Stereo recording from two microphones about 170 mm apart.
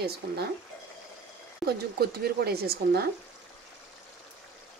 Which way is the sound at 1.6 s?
70° right (ahead or behind).